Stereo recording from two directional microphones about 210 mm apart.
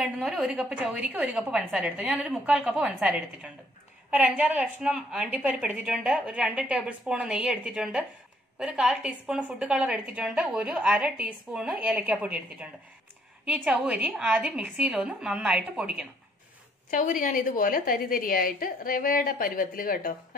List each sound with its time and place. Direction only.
0.0 s a woman's voice: centre (ahead or behind)
16.9 s a woman's voice: 40° left (ahead or behind)